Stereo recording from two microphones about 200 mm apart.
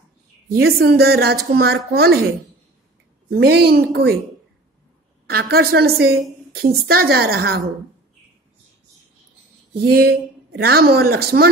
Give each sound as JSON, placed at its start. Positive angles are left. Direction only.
{"t": 0.5, "sound": "a woman's voice", "side_deg": -50}
{"t": 3.3, "sound": "a woman's voice", "side_deg": -55}
{"t": 5.2, "sound": "a woman's voice", "side_deg": -50}
{"t": 9.8, "sound": "a woman's voice", "side_deg": -50}